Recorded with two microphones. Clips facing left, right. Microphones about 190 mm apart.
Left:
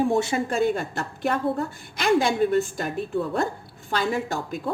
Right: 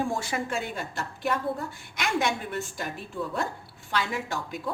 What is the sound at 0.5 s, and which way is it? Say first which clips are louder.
Speech: left 9 dB; 50° left (ahead or behind).